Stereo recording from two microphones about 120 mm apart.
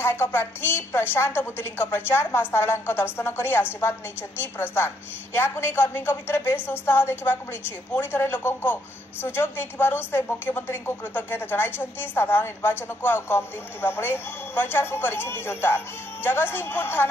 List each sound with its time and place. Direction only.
0.0 s a woman's voice: 20° left (ahead or behind)